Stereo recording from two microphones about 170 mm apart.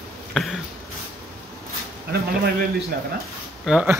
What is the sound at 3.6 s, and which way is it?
Speech, 5° right (ahead or behind).